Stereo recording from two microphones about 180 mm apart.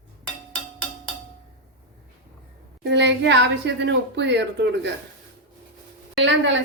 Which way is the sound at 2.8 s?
75° right (ahead or behind).